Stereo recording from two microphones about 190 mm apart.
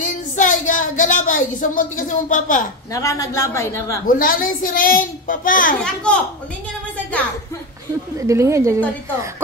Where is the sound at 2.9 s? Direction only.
15° left (ahead or behind).